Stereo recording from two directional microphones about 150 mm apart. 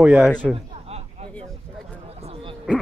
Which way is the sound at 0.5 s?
40° right (ahead or behind).